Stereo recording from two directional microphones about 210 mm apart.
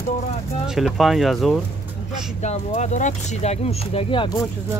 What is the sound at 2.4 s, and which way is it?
Speech, 30° left (ahead or behind).